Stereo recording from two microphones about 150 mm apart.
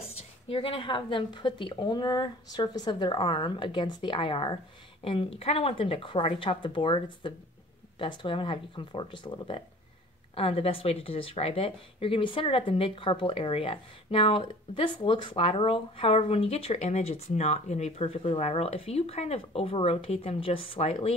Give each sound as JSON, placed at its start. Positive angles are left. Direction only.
{"t": 0.0, "sound": "speech", "side_deg": 35}